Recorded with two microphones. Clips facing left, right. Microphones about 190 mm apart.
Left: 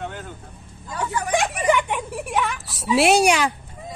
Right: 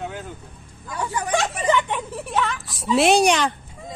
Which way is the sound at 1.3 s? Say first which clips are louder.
Left 1 dB; 15° left (ahead or behind).